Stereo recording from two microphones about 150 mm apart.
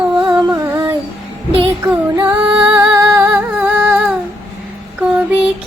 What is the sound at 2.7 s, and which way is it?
Music, 15° right (ahead or behind).